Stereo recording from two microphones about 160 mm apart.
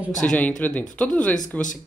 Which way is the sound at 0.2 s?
5° left (ahead or behind).